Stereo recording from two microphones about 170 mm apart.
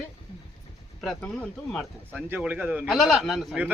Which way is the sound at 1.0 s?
5° left (ahead or behind).